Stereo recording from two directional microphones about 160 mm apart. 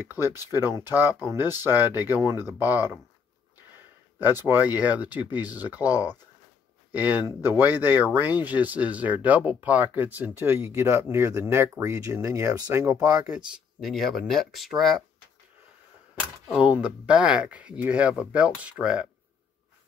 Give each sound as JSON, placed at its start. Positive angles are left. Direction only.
{"t": 0.5, "sound": "speech", "side_deg": -15}
{"t": 4.2, "sound": "speech", "side_deg": -15}
{"t": 13.3, "sound": "speech", "side_deg": -5}
{"t": 16.4, "sound": "speech", "side_deg": -5}